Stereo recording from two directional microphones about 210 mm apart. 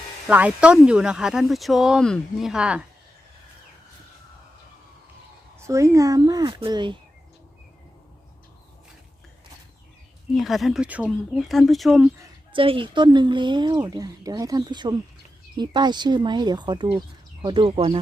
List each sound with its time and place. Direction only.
0.3 s speech: 5° right (ahead or behind)
5.5 s speech: 15° right (ahead or behind)
10.3 s speech: centre (ahead or behind)
12.2 s speech: 25° right (ahead or behind)